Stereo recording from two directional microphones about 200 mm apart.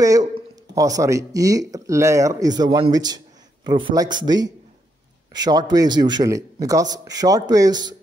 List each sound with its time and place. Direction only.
0.0 s a man's voice: 15° right (ahead or behind)